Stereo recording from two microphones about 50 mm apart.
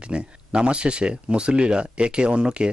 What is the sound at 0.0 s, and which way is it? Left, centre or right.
Speech, centre.